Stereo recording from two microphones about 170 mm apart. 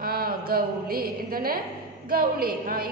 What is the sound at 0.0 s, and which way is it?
A woman's voice, 60° right (ahead or behind).